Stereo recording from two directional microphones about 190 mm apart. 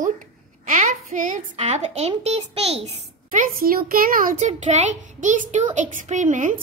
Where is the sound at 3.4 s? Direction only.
50° right (ahead or behind).